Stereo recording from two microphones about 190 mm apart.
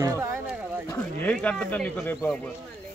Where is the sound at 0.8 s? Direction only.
10° left (ahead or behind).